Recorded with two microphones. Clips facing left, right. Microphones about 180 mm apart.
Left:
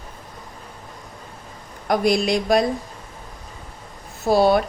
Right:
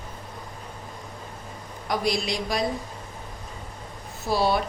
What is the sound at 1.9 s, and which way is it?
Speech, 55° left (ahead or behind).